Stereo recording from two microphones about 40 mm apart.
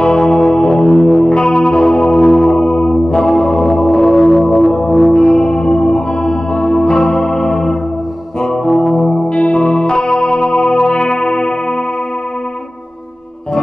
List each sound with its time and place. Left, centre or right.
0.0 s music: centre
0.8 s music: centre
8.9 s music: left